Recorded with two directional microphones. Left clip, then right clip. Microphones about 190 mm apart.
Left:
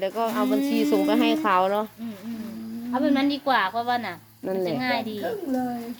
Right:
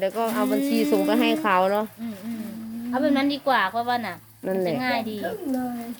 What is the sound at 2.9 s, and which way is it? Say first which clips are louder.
Speech: right 1 dB; centre (ahead or behind).